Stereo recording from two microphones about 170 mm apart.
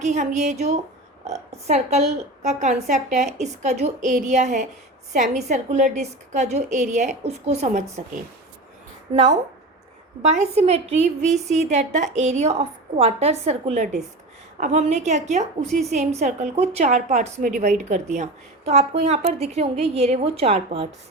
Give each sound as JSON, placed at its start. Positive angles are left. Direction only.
{"t": 0.0, "sound": "a woman's voice", "side_deg": -45}
{"t": 10.2, "sound": "a woman's voice", "side_deg": -40}
{"t": 15.6, "sound": "a woman's voice", "side_deg": 0}
{"t": 15.9, "sound": "a woman's voice", "side_deg": -45}